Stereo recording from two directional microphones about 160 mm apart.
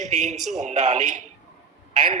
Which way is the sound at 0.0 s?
45° right (ahead or behind).